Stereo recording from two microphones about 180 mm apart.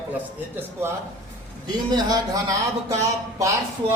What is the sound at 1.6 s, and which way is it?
Speech, 20° right (ahead or behind).